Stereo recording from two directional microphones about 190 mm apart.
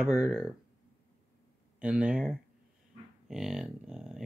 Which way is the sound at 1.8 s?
5° right (ahead or behind).